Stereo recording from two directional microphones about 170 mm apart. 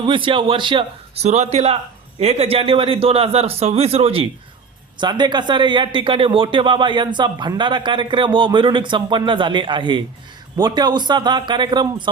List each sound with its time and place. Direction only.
0.0 s a man's voice: 30° right (ahead or behind)